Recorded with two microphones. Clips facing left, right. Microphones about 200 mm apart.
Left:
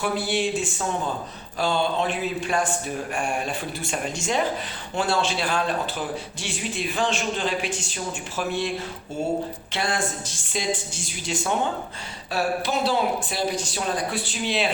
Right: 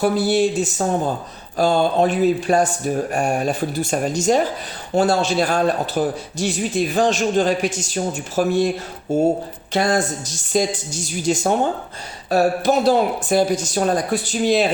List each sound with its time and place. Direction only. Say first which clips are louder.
0.0 s a man's voice: right 8 dB; 40° right (ahead or behind)
9.7 s a man's voice: right 8 dB; 40° right (ahead or behind)